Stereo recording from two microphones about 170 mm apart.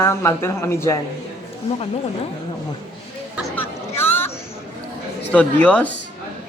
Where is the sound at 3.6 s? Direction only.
10° left (ahead or behind).